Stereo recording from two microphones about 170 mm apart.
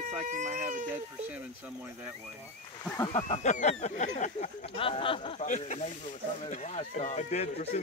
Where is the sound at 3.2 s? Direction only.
45° left (ahead or behind).